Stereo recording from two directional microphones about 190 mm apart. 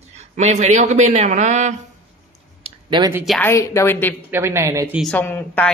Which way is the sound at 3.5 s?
15° left (ahead or behind).